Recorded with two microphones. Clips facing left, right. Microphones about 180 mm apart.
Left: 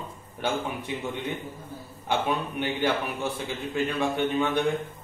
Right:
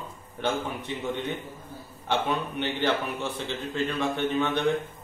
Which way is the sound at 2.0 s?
10° left (ahead or behind).